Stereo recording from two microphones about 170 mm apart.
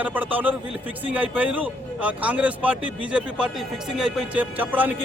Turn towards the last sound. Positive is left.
turn(degrees=-10)  # may be behind; listen again after turning